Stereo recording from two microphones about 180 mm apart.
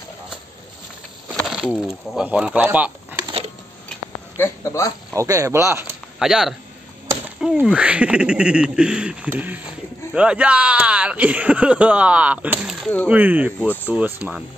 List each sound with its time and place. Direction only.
1.3 s speech: centre (ahead or behind)
3.3 s a sound: 30° right (ahead or behind)
4.4 s speech: 15° left (ahead or behind)
5.1 s speech: 20° right (ahead or behind)
6.1 s speech: 5° right (ahead or behind)
12.8 s speech: 5° left (ahead or behind)
13.1 s speech: 10° right (ahead or behind)